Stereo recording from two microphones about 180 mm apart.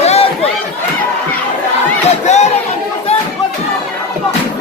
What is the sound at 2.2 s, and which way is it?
Chatter, 40° left (ahead or behind).